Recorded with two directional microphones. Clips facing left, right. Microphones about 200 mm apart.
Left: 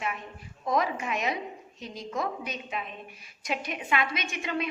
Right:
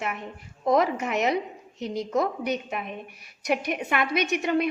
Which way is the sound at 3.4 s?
65° right (ahead or behind).